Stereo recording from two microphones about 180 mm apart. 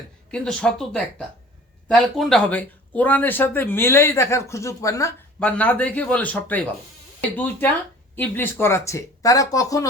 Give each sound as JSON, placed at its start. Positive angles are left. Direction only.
{"t": 0.3, "sound": "speech", "side_deg": 5}
{"t": 5.4, "sound": "speech", "side_deg": 5}